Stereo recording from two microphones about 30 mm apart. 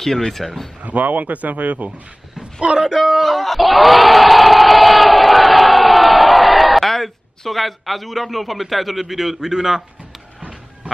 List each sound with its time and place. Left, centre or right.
0.3 s speech: centre
0.8 s a man's voice: right
2.6 s speech: right
2.9 s speech: centre
3.3 s battle cry: centre
9.5 s speech: centre